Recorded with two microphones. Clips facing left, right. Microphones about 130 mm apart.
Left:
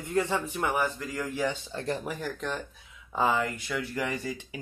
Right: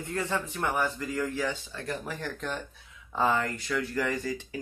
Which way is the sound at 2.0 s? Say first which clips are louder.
Left 2 dB; 10° left (ahead or behind).